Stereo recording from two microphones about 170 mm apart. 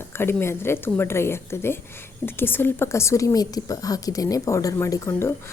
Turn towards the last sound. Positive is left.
turn(degrees=15)  # may be behind; listen again after turning